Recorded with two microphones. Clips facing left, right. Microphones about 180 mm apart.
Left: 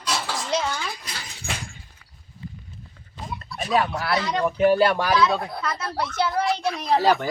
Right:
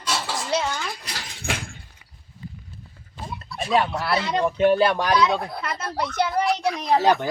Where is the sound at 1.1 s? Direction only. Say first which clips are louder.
Right 3 dB; 55° right (ahead or behind).